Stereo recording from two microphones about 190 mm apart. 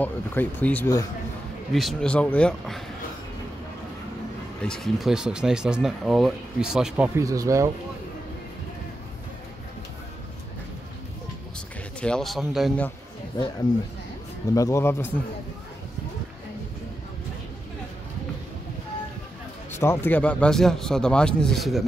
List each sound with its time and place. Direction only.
0.0 s speech: 10° left (ahead or behind)
1.7 s speech: centre (ahead or behind)
4.6 s speech: 5° left (ahead or behind)
7.2 s speech: 15° right (ahead or behind)
12.0 s speech: 5° left (ahead or behind)
13.4 s speech: 20° left (ahead or behind)
19.7 s speech: 15° left (ahead or behind)